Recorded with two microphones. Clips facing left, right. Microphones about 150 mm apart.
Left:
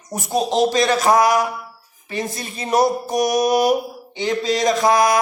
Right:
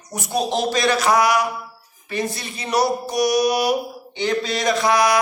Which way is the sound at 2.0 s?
20° left (ahead or behind).